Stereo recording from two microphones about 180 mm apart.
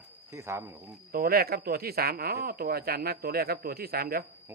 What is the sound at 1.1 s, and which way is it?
Speech, 55° right (ahead or behind).